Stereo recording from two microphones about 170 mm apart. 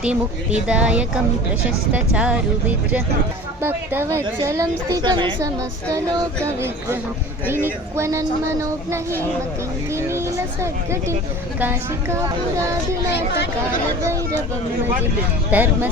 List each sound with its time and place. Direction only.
0.0 s a woman's voice: 5° right (ahead or behind); by 5.5 s 25° right (ahead or behind)
6.4 s speech: 15° right (ahead or behind)
15.5 s speech: 10° right (ahead or behind)